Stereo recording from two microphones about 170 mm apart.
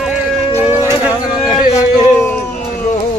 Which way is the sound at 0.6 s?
15° right (ahead or behind).